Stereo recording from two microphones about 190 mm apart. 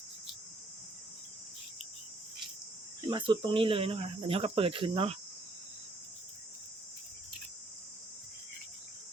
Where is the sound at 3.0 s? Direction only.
25° right (ahead or behind).